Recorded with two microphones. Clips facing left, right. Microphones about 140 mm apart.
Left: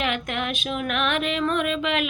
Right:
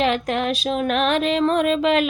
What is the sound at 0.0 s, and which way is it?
Speech, 35° right (ahead or behind).